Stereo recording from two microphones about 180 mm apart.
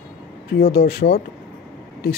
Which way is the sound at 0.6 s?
55° left (ahead or behind).